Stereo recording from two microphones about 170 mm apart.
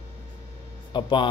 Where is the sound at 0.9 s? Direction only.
30° left (ahead or behind).